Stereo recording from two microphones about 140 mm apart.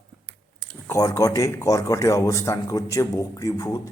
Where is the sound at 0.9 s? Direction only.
25° left (ahead or behind).